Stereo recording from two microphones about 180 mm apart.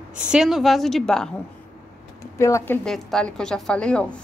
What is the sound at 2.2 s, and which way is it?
Speech, 15° left (ahead or behind).